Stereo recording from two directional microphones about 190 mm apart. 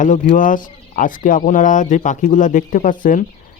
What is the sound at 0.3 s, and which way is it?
Speech, 45° left (ahead or behind).